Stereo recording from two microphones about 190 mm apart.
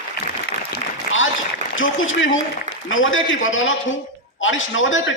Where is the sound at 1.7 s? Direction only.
90° left.